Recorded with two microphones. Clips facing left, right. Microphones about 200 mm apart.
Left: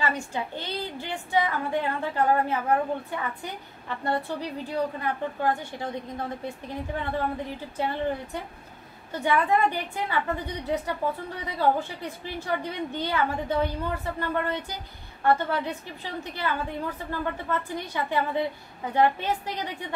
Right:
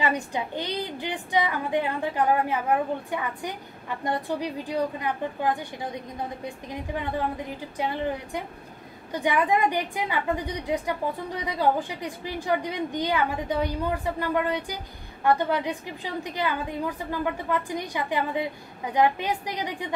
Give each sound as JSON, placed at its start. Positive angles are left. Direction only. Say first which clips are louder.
{"t": 0.0, "sound": "a woman's voice", "louder": "right 2 dB", "side_deg": -15}